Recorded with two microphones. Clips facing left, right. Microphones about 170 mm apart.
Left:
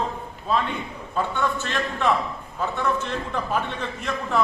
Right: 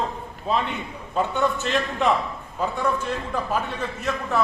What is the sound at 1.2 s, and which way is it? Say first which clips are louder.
A man's voice: right 2 dB; 15° right (ahead or behind).